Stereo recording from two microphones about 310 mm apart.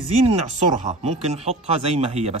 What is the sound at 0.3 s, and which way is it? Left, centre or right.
Speech, right.